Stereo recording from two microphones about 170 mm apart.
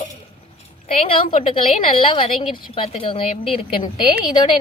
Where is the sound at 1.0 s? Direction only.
35° left (ahead or behind).